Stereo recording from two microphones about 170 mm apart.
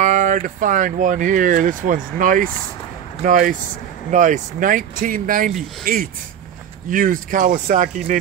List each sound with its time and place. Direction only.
0.0 s speech: 50° right (ahead or behind)